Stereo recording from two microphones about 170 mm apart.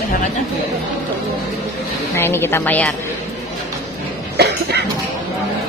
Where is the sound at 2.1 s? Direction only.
15° left (ahead or behind).